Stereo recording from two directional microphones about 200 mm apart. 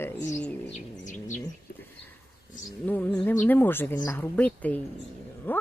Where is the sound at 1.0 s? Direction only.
40° left (ahead or behind).